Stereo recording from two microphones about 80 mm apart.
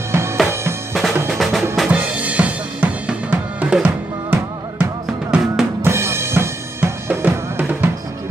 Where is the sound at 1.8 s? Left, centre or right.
Centre.